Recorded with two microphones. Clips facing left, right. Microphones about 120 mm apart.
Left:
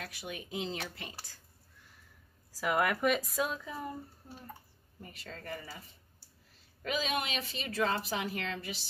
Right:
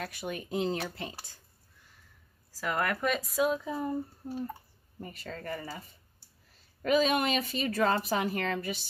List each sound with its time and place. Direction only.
0.0 s speech: 45° right (ahead or behind)
0.9 s speech: 25° right (ahead or behind)
2.6 s speech: 10° left (ahead or behind)
5.2 s speech: 50° right (ahead or behind)